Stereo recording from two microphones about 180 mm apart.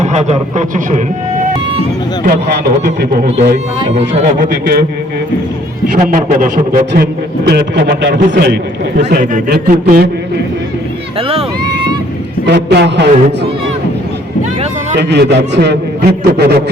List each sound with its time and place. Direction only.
0.0 s a man's voice: 40° right (ahead or behind)
2.2 s a man's voice: 65° right (ahead or behind)
3.2 s a man's voice: 35° right (ahead or behind)
4.4 s a man's voice: 60° right (ahead or behind)
6.0 s a man's voice: 50° right (ahead or behind)
6.9 s a man's voice: 65° right (ahead or behind)
9.3 s a man's voice: 55° right (ahead or behind)
11.2 s a sound: 30° right (ahead or behind)
12.5 s a man's voice: 70° right (ahead or behind)
14.9 s a man's voice: 65° right (ahead or behind)